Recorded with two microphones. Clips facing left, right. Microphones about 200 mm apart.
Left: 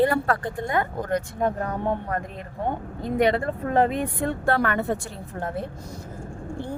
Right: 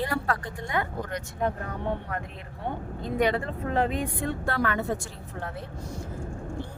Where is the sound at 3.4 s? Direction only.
50° left (ahead or behind).